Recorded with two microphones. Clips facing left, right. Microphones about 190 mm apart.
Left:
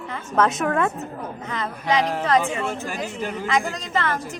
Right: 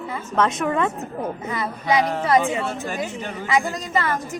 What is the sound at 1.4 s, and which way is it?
A woman's voice, 10° right (ahead or behind).